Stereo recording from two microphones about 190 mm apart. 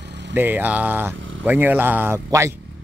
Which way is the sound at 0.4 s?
10° right (ahead or behind).